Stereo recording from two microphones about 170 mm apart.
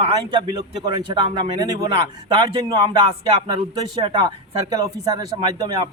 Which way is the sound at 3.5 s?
30° right (ahead or behind).